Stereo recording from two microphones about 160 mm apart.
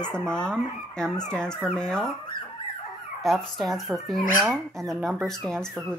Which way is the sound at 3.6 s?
Centre (ahead or behind).